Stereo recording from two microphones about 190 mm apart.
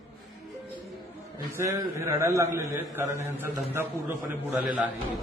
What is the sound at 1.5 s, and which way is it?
A man's voice, 15° right (ahead or behind).